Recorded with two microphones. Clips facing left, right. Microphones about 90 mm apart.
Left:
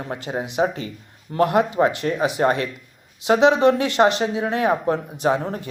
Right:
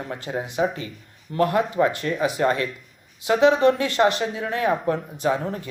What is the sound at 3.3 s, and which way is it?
Speech, 25° left (ahead or behind).